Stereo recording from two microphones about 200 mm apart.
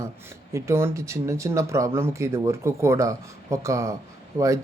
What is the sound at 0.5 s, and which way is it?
Speech, 15° right (ahead or behind).